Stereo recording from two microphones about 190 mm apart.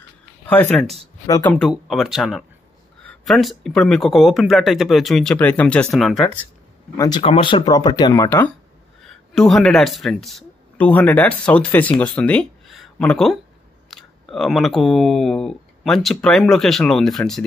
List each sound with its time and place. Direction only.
0.5 s speech: 5° left (ahead or behind)
1.2 s speech: 20° left (ahead or behind)
1.5 s speech: centre (ahead or behind)
7.0 s speech: 25° left (ahead or behind)
9.0 s speech: centre (ahead or behind)